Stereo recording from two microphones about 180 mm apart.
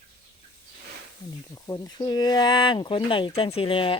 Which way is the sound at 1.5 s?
20° left (ahead or behind).